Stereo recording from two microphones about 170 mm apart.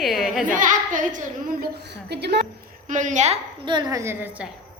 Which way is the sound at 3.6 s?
25° right (ahead or behind).